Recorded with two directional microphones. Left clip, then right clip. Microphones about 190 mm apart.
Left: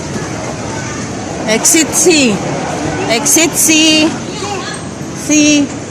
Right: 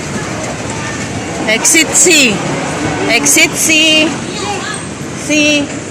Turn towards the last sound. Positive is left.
turn(degrees=50)  # may be behind; listen again after turning